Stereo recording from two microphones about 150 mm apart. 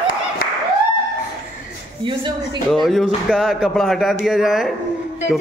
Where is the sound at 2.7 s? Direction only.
Centre (ahead or behind).